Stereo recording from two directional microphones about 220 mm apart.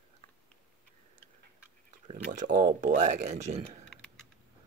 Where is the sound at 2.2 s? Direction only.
35° right (ahead or behind).